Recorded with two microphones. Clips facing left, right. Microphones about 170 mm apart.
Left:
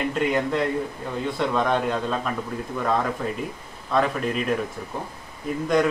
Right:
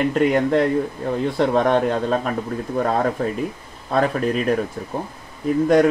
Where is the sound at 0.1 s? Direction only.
45° right (ahead or behind).